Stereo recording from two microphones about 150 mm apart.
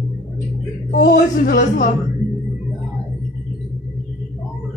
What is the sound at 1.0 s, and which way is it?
Speech, 80° left.